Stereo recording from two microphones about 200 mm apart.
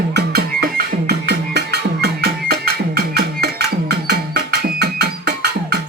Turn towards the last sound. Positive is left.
turn(degrees=-55)  # may be behind; listen again after turning